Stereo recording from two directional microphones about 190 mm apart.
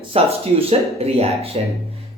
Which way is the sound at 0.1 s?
30° right (ahead or behind).